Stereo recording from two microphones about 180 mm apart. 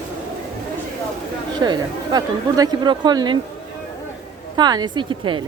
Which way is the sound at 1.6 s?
25° right (ahead or behind).